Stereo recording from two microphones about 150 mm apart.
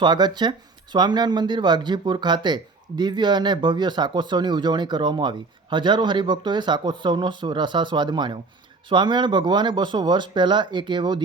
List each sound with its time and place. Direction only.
0.0 s speech: 30° right (ahead or behind)